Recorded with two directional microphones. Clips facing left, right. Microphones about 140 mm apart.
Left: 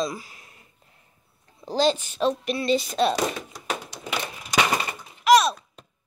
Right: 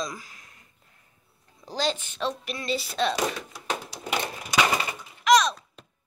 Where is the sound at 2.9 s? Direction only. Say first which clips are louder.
Left 3 dB; 15° left (ahead or behind).